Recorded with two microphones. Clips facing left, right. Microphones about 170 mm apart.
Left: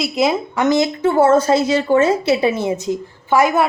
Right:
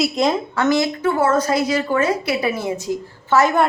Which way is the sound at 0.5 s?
20° left (ahead or behind).